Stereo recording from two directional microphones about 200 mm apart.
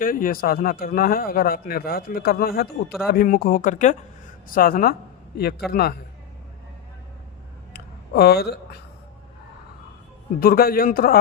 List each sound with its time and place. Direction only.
0.0 s a man's voice: 45° left (ahead or behind)
7.7 s a sound: 50° left (ahead or behind)
10.4 s a man's voice: 45° left (ahead or behind)